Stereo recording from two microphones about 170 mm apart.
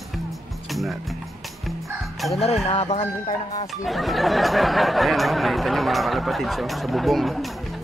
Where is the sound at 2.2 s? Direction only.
Centre (ahead or behind).